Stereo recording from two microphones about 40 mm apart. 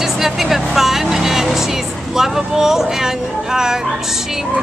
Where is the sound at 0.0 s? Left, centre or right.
Centre.